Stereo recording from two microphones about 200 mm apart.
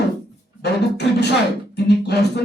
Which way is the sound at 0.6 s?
55° left (ahead or behind).